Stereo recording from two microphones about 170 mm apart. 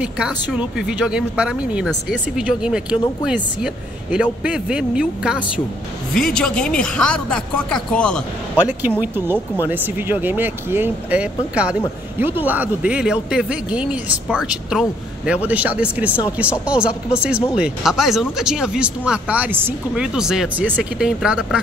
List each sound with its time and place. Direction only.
0.0 s speech: 5° right (ahead or behind)
8.5 s speech: 10° right (ahead or behind)